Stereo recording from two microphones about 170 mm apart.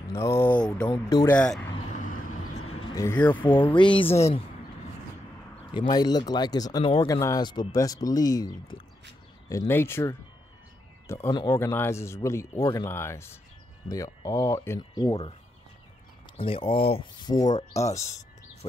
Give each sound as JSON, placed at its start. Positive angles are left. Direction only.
{"t": 0.1, "sound": "speech", "side_deg": 15}
{"t": 0.8, "sound": "speech", "side_deg": 20}
{"t": 1.9, "sound": "vehicle", "side_deg": 45}
{"t": 2.8, "sound": "a sound", "side_deg": 25}
{"t": 3.1, "sound": "speech", "side_deg": 10}
{"t": 3.4, "sound": "speech", "side_deg": 30}
{"t": 5.7, "sound": "speech", "side_deg": 25}
{"t": 7.1, "sound": "speech", "side_deg": 20}
{"t": 9.5, "sound": "speech", "side_deg": 15}
{"t": 14.8, "sound": "speech", "side_deg": 25}
{"t": 16.3, "sound": "speech", "side_deg": 30}
{"t": 17.5, "sound": "speech", "side_deg": 40}